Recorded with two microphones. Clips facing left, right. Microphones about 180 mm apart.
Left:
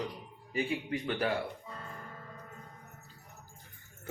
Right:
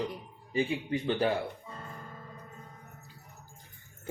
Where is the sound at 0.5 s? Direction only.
25° right (ahead or behind).